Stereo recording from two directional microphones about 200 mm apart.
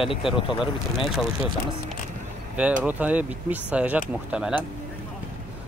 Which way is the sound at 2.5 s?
5° right (ahead or behind).